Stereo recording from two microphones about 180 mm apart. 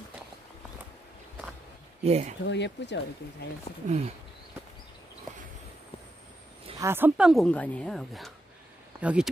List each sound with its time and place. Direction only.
2.0 s speech: 35° right (ahead or behind)
2.4 s speech: 80° left
3.8 s speech: 45° right (ahead or behind)
6.8 s a woman's voice: 10° right (ahead or behind)